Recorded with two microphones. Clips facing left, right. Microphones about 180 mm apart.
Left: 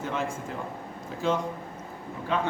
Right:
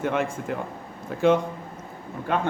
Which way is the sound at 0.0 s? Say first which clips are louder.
Right 5 dB; 65° right (ahead or behind).